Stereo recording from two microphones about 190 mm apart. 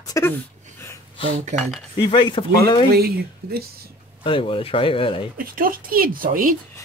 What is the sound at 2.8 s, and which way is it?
Speech, 55° right (ahead or behind).